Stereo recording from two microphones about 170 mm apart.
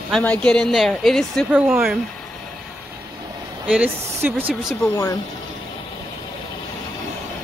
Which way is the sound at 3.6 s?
5° right (ahead or behind).